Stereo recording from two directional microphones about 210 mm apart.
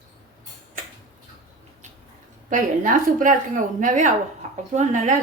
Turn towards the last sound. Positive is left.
turn(degrees=-35)  # may be behind; listen again after turning